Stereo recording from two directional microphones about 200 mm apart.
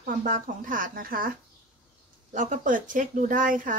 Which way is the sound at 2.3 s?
40° right (ahead or behind).